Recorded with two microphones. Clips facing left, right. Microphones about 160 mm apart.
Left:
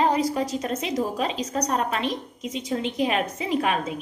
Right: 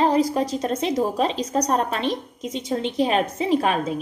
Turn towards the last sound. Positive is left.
turn(degrees=-35)  # may be behind; listen again after turning